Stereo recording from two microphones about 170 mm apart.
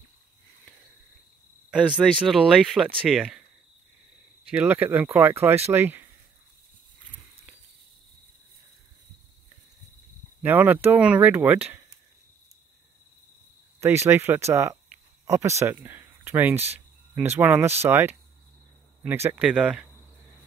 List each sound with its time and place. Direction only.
1.7 s speech: 5° right (ahead or behind)
4.5 s speech: 10° right (ahead or behind)
10.4 s speech: 10° right (ahead or behind)
13.7 s speech: 15° right (ahead or behind)